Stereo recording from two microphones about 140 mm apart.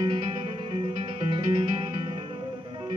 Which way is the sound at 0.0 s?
30° right (ahead or behind).